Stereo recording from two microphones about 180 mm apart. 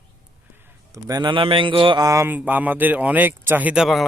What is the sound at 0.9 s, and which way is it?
Speech, 20° right (ahead or behind).